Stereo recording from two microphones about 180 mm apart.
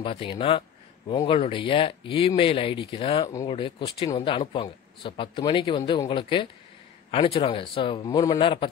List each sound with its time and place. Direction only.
0.0 s speech: 30° left (ahead or behind)